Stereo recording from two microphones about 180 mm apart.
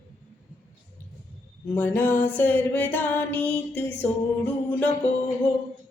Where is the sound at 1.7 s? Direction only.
10° left (ahead or behind).